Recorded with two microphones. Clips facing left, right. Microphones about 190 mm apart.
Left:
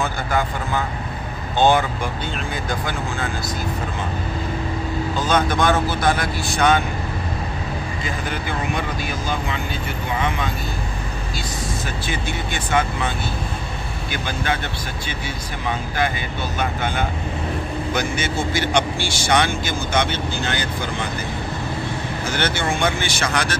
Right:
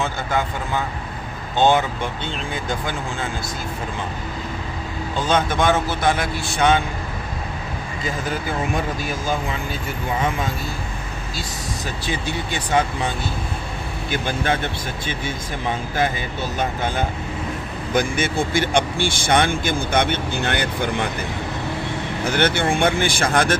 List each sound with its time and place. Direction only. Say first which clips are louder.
5.3 s speech: even; 25° right (ahead or behind)
8.3 s speech: right 2 dB; 40° right (ahead or behind)
12.1 s speech: right 2 dB; 35° right (ahead or behind)
14.1 s speech: right 3 dB; 50° right (ahead or behind)
16.5 s speech: even; 40° right (ahead or behind)
17.9 s speech: right 5 dB; 55° right (ahead or behind)
22.2 s speech: right 4 dB; 55° right (ahead or behind)